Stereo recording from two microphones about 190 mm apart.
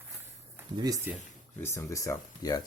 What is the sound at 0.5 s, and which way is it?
Speech, 15° right (ahead or behind).